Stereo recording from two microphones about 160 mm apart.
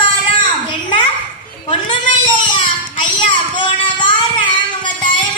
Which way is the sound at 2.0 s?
55° left (ahead or behind).